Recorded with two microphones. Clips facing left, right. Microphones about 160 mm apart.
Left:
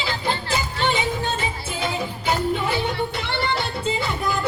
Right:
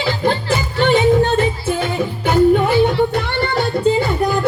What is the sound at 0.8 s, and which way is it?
Music, 60° right (ahead or behind).